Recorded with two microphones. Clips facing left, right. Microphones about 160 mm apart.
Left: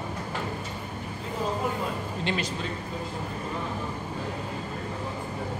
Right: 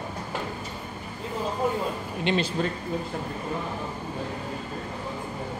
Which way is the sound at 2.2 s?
30° right (ahead or behind).